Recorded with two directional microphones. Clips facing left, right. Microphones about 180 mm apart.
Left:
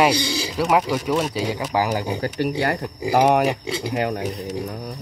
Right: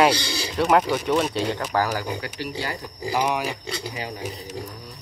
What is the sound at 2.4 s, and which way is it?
Speech, 60° left (ahead or behind).